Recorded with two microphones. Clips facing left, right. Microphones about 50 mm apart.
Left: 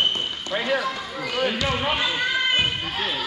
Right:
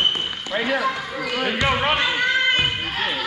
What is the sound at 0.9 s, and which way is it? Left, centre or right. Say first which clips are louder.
Speech: right 4 dB; right.